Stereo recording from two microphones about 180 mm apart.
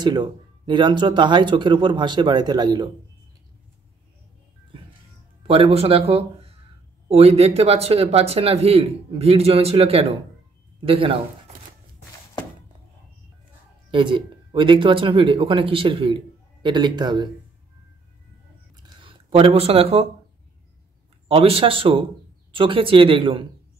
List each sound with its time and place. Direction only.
0.0 s speech: 25° right (ahead or behind)
5.4 s speech: 30° right (ahead or behind)
13.8 s speech: 25° right (ahead or behind)
18.8 s a sound: 30° right (ahead or behind)
21.3 s speech: 30° right (ahead or behind)